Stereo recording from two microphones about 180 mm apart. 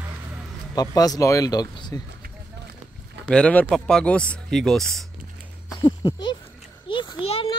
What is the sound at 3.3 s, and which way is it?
Speech, 5° left (ahead or behind).